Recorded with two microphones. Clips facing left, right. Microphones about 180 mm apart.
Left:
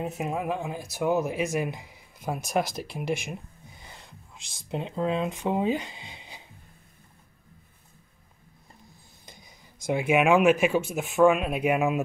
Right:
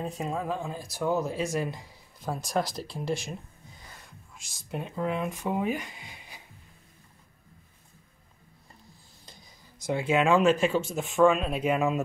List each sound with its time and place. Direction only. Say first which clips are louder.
0.0 s speech: left 2 dB; 15° left (ahead or behind)
3.8 s music: left 2 dB; 25° left (ahead or behind)
4.6 s speech: left 3 dB; 20° left (ahead or behind)
9.8 s speech: left 2 dB; 15° left (ahead or behind)